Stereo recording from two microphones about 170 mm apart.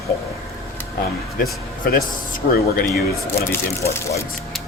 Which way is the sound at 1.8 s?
55° left (ahead or behind).